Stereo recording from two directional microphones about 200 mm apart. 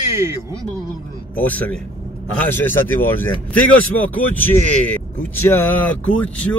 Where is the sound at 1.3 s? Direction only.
10° left (ahead or behind).